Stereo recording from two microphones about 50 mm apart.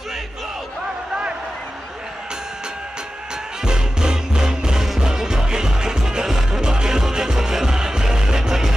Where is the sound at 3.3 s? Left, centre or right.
Centre.